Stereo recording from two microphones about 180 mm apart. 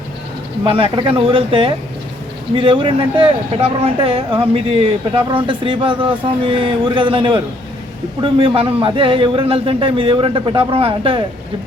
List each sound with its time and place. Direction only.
0.6 s speech: 30° right (ahead or behind)